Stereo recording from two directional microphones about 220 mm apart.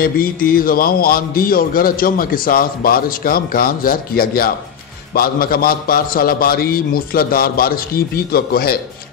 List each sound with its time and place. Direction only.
0.0 s a man's voice: 40° left (ahead or behind)